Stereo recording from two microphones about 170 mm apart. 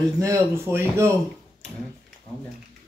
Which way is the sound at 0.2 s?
15° right (ahead or behind).